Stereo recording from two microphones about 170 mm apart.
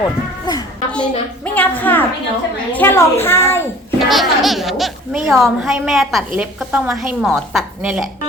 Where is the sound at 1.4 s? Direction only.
10° left (ahead or behind).